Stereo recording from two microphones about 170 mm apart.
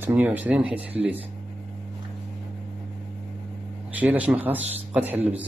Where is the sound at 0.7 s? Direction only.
35° right (ahead or behind).